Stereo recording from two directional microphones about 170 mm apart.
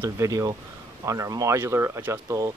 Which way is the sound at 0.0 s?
20° right (ahead or behind).